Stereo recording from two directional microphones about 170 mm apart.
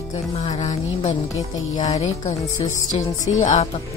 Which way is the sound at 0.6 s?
45° left (ahead or behind).